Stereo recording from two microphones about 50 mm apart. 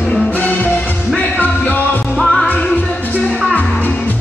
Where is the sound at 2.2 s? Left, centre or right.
Centre.